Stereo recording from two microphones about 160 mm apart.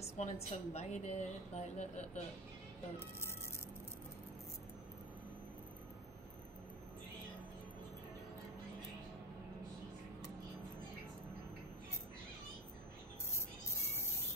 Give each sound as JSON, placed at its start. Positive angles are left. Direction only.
{"t": 0.0, "sound": "a woman's voice", "side_deg": 45}
{"t": 13.8, "sound": "music", "side_deg": 15}